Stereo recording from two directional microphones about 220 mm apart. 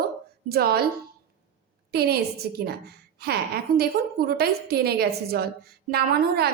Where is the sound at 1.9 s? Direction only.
45° right (ahead or behind).